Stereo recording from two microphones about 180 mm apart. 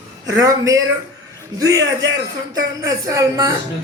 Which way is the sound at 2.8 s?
20° right (ahead or behind).